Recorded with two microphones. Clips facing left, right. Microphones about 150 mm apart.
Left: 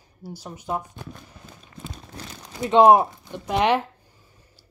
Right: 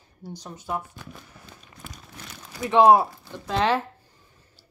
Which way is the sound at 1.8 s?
30° left (ahead or behind).